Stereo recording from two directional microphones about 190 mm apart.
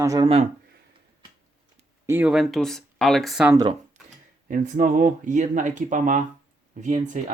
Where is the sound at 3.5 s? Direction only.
20° right (ahead or behind).